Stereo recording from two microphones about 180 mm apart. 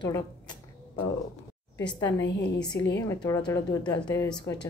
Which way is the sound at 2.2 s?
80° left.